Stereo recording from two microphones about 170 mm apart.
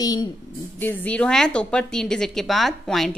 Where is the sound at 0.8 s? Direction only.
10° left (ahead or behind).